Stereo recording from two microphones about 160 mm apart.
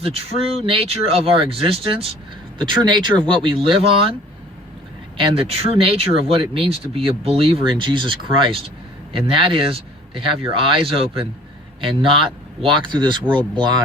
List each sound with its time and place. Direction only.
0.0 s speech: 40° right (ahead or behind)
5.1 s speech: 35° right (ahead or behind)